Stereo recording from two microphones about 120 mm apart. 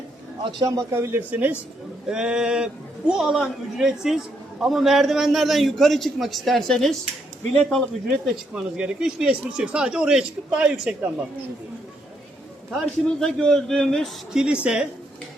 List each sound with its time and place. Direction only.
0.6 s a man's voice: 30° right (ahead or behind); by 11.1 s 10° right (ahead or behind)
13.1 s a man's voice: 5° left (ahead or behind)
14.4 s speech: 10° right (ahead or behind)